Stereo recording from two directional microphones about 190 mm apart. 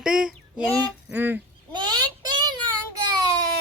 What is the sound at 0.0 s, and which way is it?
Child singing, 5° right (ahead or behind).